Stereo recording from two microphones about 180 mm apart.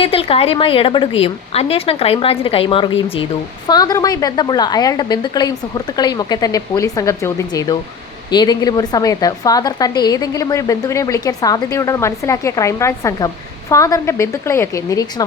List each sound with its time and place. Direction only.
0.0 s a woman's voice: 30° left (ahead or behind)